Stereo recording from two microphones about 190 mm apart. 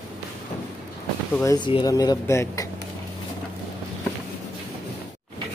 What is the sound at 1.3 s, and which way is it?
Speech, 20° left (ahead or behind).